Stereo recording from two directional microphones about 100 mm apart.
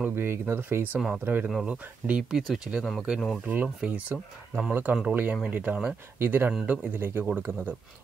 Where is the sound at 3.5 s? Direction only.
15° right (ahead or behind).